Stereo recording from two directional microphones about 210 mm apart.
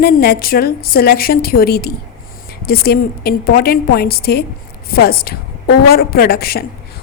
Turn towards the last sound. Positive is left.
turn(degrees=45)  # may be behind; listen again after turning